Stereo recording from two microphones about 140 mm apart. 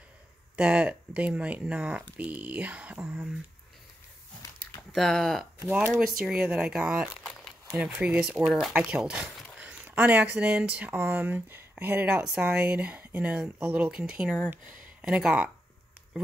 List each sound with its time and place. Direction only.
0.6 s speech: 10° right (ahead or behind)
4.9 s speech: 5° left (ahead or behind)